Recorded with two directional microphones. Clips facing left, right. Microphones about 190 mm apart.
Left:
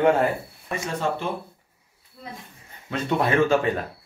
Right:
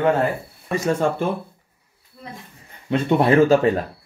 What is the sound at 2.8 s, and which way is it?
Speech, 30° right (ahead or behind).